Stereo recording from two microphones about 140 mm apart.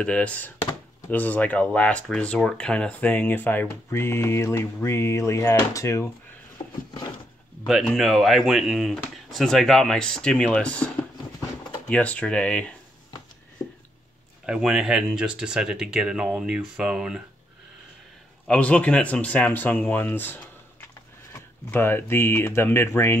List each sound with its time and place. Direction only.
0.0 s speech: 10° left (ahead or behind)
6.6 s a sound: 30° left (ahead or behind)
7.6 s speech: centre (ahead or behind)
11.9 s speech: 10° left (ahead or behind)
14.4 s speech: 5° right (ahead or behind)
18.5 s speech: 10° left (ahead or behind)
21.6 s speech: 15° left (ahead or behind)